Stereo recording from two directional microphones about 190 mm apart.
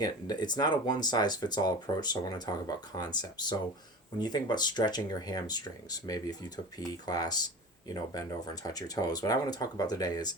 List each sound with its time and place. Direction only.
0.0 s speech: 20° left (ahead or behind)